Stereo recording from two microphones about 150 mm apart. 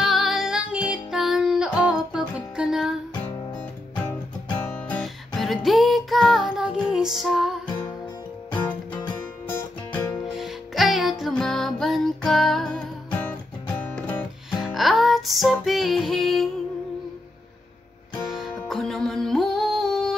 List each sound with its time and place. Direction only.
0.0 s music: centre (ahead or behind)
4.6 s music: 10° left (ahead or behind)
10.3 s music: centre (ahead or behind)
14.6 s music: centre (ahead or behind)
18.2 s music: centre (ahead or behind)